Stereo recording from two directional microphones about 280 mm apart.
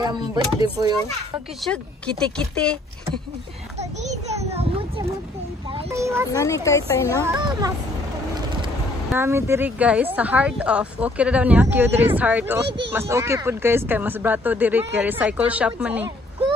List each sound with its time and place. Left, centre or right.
0.0 s speech: centre
1.6 s speech: centre
4.0 s a sound: right
5.9 s speech: centre
6.3 s a woman's voice: centre
7.3 s speech: centre
9.1 s speech: centre
12.6 s speech: right
12.9 s speech: centre